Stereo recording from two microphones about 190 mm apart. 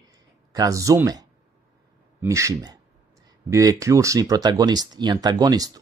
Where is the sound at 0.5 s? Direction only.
20° right (ahead or behind).